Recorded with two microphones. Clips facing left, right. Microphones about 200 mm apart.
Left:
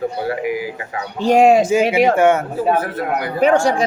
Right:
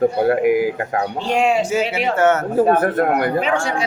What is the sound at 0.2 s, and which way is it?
Speech, 55° right (ahead or behind).